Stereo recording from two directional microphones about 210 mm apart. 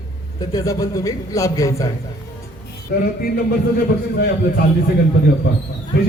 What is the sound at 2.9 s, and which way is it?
Speech, 45° left (ahead or behind).